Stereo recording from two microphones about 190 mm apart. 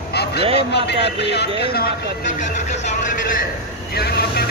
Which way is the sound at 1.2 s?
60° left (ahead or behind).